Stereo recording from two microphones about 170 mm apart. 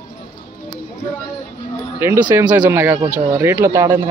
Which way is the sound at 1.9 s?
10° right (ahead or behind).